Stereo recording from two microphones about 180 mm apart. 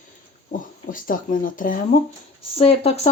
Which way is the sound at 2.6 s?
35° left (ahead or behind).